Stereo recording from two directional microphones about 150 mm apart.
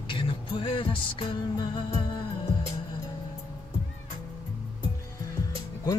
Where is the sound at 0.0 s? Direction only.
35° left (ahead or behind).